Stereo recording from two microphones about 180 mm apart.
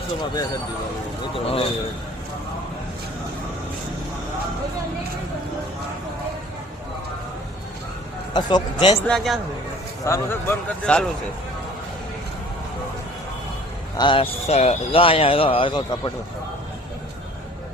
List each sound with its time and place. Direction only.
1.5 s speech: 30° left (ahead or behind)
8.3 s a man's voice: 25° left (ahead or behind)
9.0 s a man's voice: centre (ahead or behind)
10.0 s speech: 15° left (ahead or behind)
14.0 s speech: 30° left (ahead or behind)